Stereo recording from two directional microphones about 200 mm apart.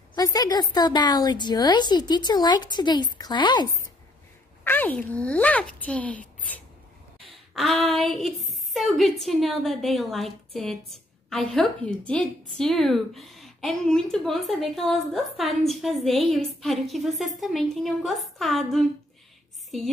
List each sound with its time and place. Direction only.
0.1 s a woman's voice: 20° left (ahead or behind)
4.6 s a child's voice: 10° left (ahead or behind)